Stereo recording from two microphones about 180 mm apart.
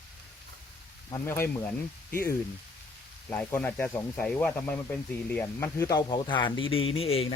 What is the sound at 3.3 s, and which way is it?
Speech, 10° left (ahead or behind).